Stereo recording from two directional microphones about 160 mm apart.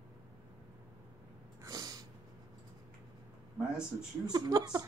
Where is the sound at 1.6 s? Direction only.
25° right (ahead or behind).